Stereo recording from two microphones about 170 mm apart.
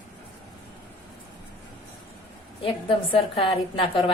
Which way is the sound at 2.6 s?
30° left (ahead or behind).